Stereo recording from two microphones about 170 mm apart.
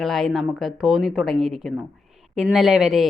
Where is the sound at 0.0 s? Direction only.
Centre (ahead or behind).